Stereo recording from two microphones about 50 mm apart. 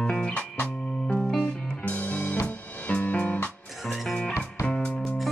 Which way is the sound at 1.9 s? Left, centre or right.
Left.